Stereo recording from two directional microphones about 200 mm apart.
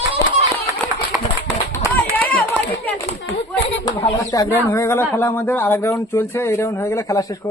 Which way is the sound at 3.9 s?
25° left (ahead or behind).